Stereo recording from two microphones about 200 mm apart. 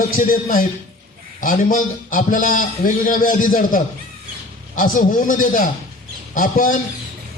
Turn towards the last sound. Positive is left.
turn(degrees=45)  # may be behind; listen again after turning